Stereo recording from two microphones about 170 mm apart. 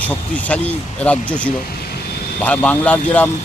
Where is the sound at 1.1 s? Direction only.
10° left (ahead or behind).